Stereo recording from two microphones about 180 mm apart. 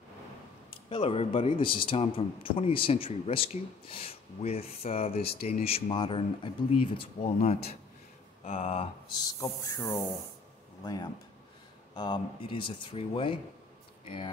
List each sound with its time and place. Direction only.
0.8 s a man's voice: 30° left (ahead or behind)
9.4 s a sound: 15° left (ahead or behind)
10.8 s speech: 25° left (ahead or behind)